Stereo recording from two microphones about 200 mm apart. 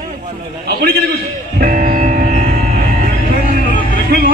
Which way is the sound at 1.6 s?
45° right (ahead or behind).